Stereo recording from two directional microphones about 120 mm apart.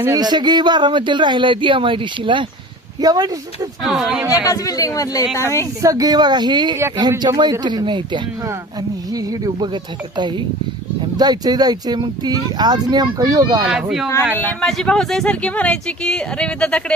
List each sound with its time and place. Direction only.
0.1 s speech: 35° right (ahead or behind)
3.0 s speech: 30° right (ahead or behind)
3.8 s speech: 5° right (ahead or behind)
4.4 s speech: 30° left (ahead or behind)
5.8 s speech: 30° right (ahead or behind)
14.3 s speech: 15° left (ahead or behind)